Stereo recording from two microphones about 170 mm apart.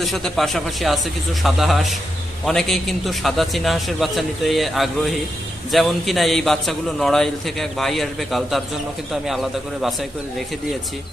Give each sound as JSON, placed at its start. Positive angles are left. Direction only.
{"t": 0.0, "sound": "a man's voice", "side_deg": 0}